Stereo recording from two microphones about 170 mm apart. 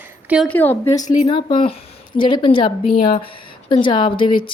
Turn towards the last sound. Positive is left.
turn(degrees=30)  # may be behind; listen again after turning